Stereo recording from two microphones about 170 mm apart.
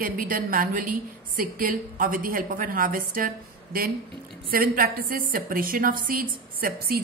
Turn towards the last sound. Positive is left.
turn(degrees=-60)  # may be behind; listen again after turning